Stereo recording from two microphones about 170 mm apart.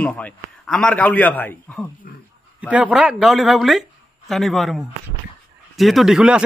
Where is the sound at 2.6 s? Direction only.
5° right (ahead or behind).